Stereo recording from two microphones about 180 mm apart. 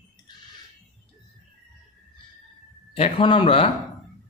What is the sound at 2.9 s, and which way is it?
Speech, 30° left (ahead or behind).